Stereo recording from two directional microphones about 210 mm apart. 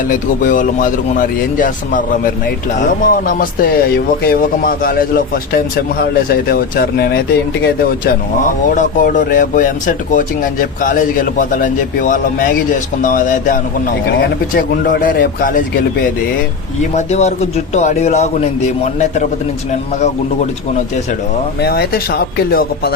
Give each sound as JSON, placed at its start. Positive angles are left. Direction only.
{"t": 0.1, "sound": "speech", "side_deg": 40}
{"t": 16.9, "sound": "speech", "side_deg": 30}
{"t": 20.0, "sound": "speech", "side_deg": 35}
{"t": 21.6, "sound": "speech", "side_deg": 50}